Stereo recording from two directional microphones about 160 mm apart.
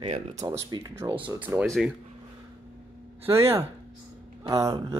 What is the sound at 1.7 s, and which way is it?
Speech, centre (ahead or behind).